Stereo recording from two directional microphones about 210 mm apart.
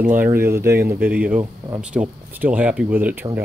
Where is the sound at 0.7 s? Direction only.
45° right (ahead or behind).